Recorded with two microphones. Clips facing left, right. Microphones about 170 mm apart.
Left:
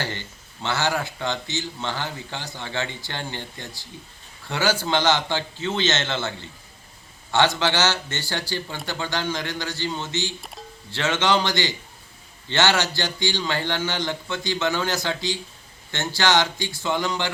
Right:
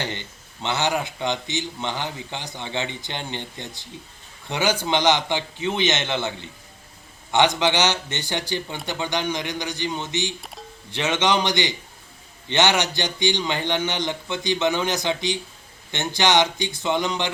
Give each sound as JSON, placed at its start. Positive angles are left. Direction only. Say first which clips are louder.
{"t": 0.0, "sound": "a man's voice", "louder": "right 1 dB", "side_deg": -20}